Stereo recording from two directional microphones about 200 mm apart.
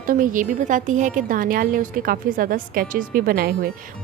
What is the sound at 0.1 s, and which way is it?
A woman's voice, 45° right (ahead or behind).